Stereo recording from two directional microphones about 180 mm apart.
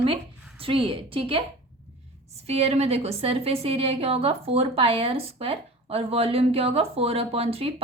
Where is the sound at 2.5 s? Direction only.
35° right (ahead or behind).